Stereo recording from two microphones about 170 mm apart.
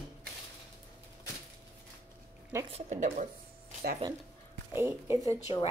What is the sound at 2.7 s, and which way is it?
Speech, 45° right (ahead or behind).